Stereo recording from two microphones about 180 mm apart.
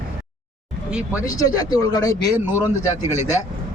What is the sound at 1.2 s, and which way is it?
Speech, 20° left (ahead or behind).